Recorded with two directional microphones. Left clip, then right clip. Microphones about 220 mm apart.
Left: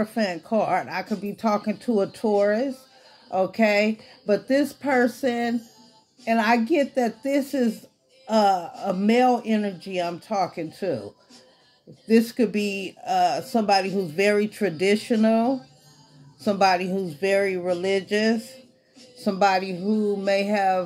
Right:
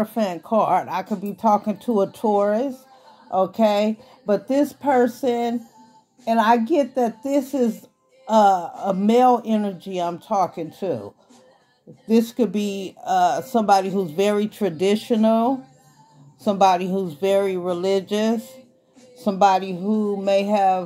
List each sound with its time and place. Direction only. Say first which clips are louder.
0.0 s speech: right 2 dB; 25° right (ahead or behind)
12.1 s speech: right 1 dB; 20° right (ahead or behind)